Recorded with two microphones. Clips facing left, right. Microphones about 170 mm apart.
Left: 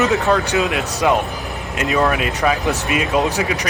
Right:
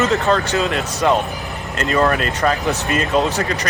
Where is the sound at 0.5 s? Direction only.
10° left (ahead or behind).